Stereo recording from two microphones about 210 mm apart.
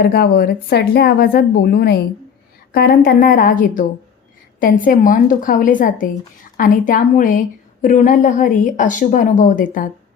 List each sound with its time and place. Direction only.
0.0 s a woman's voice: 50° left (ahead or behind)